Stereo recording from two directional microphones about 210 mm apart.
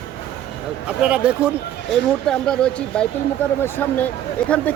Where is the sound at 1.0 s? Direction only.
5° right (ahead or behind).